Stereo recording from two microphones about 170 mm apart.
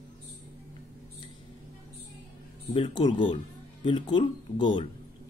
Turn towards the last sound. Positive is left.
turn(degrees=30)  # may be behind; listen again after turning